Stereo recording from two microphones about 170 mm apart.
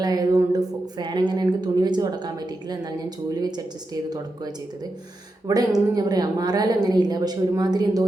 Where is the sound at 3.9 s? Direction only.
25° right (ahead or behind).